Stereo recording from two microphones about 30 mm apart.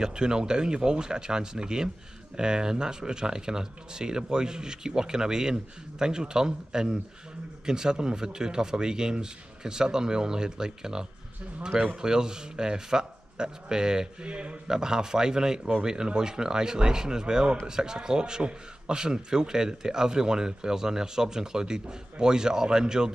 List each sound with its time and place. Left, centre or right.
0.0 s a man's voice: right
14.3 s speech: right
14.7 s a man's voice: right